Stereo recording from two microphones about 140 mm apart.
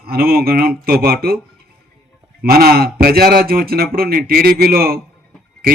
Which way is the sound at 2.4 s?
90° right.